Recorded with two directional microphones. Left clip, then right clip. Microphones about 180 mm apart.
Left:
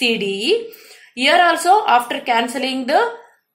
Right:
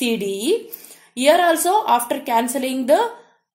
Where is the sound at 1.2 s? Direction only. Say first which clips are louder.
Left 1 dB; 45° right (ahead or behind).